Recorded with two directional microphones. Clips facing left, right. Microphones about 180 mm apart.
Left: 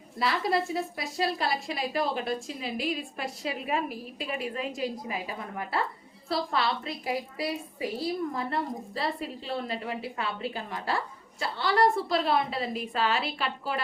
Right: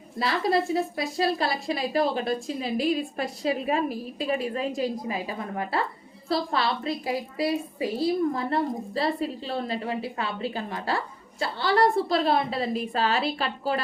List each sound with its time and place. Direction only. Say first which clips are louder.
0.2 s a woman's voice: right 3 dB; 30° right (ahead or behind)